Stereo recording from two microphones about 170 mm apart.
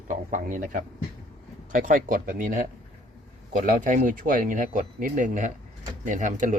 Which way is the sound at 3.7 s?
50° right (ahead or behind).